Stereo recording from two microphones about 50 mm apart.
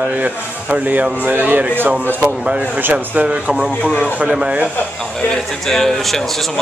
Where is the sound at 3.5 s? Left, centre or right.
Right.